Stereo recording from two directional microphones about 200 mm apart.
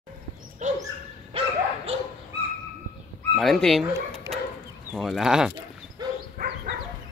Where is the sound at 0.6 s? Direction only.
35° right (ahead or behind).